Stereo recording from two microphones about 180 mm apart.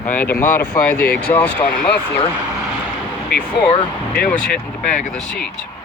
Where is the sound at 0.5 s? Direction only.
55° left (ahead or behind).